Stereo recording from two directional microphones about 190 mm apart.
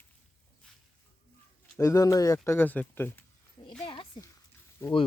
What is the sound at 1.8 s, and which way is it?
Speech, 15° left (ahead or behind).